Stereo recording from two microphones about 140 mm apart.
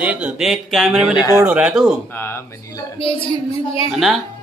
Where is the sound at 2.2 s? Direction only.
20° left (ahead or behind).